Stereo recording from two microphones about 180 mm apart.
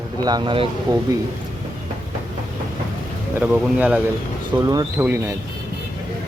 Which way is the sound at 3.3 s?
10° right (ahead or behind).